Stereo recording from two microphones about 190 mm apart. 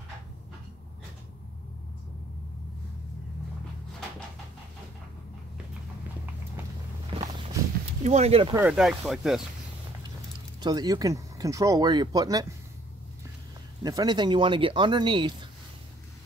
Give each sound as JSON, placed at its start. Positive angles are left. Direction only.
{"t": 7.1, "sound": "walk", "side_deg": -30}
{"t": 8.0, "sound": "speech", "side_deg": -35}
{"t": 8.5, "sound": "speech", "side_deg": -5}
{"t": 10.6, "sound": "speech", "side_deg": -20}
{"t": 13.8, "sound": "speech", "side_deg": -20}